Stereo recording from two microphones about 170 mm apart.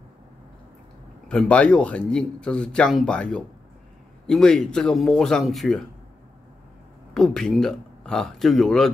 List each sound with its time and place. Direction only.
1.3 s speech: 5° left (ahead or behind)
7.2 s speech: centre (ahead or behind)